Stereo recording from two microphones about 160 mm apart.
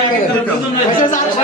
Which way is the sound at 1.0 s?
55° left (ahead or behind).